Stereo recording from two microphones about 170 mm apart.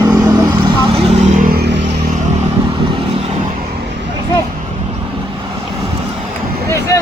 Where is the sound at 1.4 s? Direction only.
60° right (ahead or behind); by 2.0 s 90° right.